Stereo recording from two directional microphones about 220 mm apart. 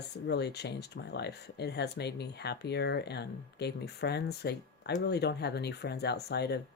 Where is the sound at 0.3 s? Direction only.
50° left (ahead or behind).